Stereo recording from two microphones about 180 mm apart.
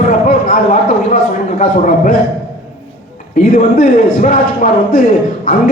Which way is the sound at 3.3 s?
50° left (ahead or behind).